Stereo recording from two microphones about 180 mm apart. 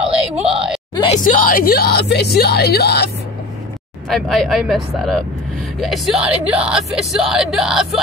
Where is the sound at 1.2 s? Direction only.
50° left (ahead or behind).